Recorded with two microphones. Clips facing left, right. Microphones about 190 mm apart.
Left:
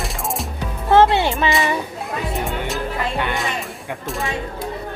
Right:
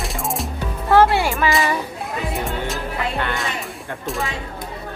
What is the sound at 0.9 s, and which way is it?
Music, 20° left (ahead or behind).